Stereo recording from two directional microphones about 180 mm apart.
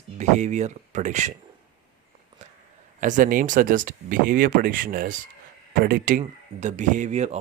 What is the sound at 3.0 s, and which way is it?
Speech, 45° right (ahead or behind).